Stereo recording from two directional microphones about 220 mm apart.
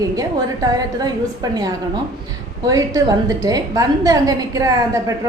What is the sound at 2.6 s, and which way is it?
A woman's voice, 15° right (ahead or behind).